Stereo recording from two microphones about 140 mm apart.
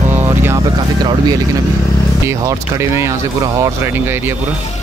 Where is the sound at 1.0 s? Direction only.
30° right (ahead or behind).